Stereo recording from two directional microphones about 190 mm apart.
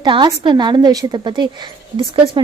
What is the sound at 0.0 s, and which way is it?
A woman's voice, 25° right (ahead or behind).